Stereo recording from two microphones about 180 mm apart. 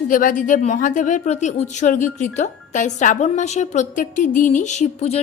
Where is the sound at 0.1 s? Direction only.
50° left (ahead or behind).